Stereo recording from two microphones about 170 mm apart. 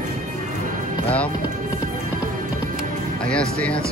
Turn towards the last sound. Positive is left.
turn(degrees=5)  # may be behind; listen again after turning